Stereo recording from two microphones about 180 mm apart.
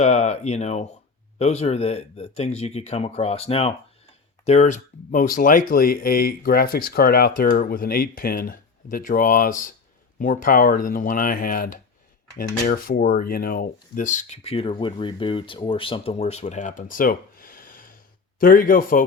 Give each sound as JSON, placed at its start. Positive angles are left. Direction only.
{"t": 0.0, "sound": "speech", "side_deg": 40}